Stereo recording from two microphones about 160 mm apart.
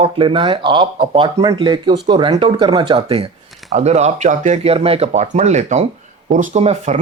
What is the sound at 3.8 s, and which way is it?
Speech, 45° right (ahead or behind).